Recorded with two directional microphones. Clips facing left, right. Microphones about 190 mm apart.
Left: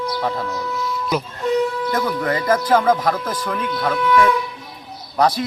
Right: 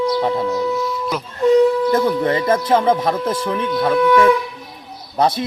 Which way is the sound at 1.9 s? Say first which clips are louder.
Right 4 dB; 25° right (ahead or behind).